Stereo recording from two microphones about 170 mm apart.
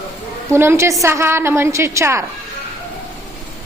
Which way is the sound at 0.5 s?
15° right (ahead or behind).